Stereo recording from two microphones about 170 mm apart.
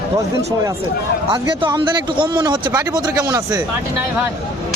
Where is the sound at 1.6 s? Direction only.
25° right (ahead or behind).